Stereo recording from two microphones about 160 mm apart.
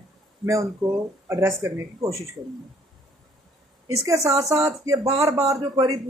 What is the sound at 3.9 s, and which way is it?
Speech, 20° right (ahead or behind).